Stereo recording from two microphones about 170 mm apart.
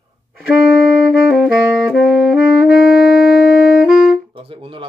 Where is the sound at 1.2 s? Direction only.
Centre (ahead or behind).